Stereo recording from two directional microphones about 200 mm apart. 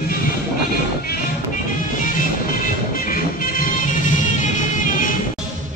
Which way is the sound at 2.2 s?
45° left (ahead or behind).